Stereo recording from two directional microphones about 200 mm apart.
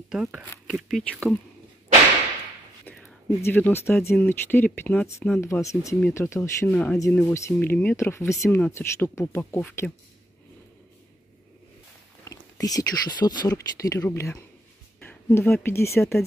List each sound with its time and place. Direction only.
0.1 s speech: 5° right (ahead or behind)
2.8 s speech: 10° left (ahead or behind)
12.3 s speech: 15° left (ahead or behind)